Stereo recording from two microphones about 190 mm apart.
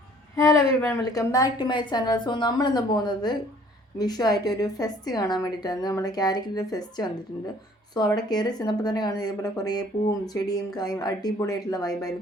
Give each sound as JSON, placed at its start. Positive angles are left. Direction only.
{"t": 0.3, "sound": "a woman's voice", "side_deg": 15}